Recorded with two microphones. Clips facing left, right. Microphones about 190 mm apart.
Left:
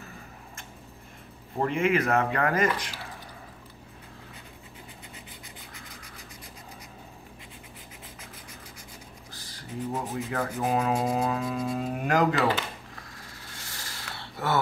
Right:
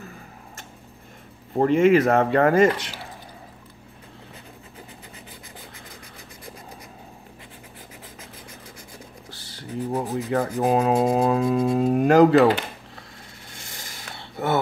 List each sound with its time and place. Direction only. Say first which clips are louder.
1.6 s rub: right 8 dB; 35° right (ahead or behind)
9.3 s rub: right 6 dB; 30° right (ahead or behind)
13.5 s a sound: right 2 dB; 20° right (ahead or behind)